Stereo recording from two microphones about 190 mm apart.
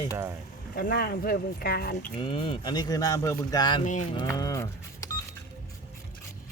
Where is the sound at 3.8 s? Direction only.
40° left (ahead or behind).